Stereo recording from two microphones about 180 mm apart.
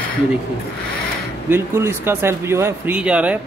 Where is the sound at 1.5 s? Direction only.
15° right (ahead or behind).